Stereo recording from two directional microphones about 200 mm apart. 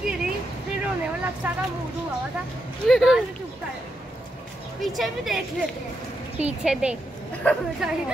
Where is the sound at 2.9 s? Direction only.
Centre (ahead or behind).